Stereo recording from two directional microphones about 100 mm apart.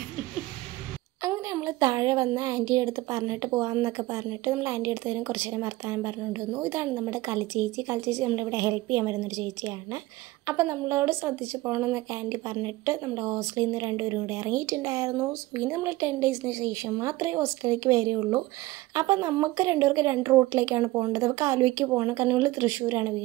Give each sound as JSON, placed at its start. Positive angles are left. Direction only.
{"t": 1.2, "sound": "speech", "side_deg": -30}